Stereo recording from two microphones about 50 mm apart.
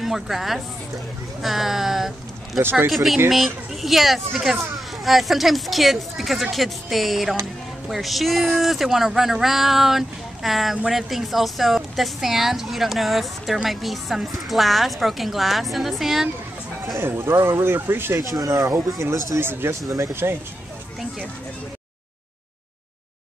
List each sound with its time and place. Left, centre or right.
0.0 s speech: centre
2.6 s speech: right
2.9 s speech: centre
17.0 s speech: right
18.6 s speech: right
19.4 s speech: right
19.9 s speech: right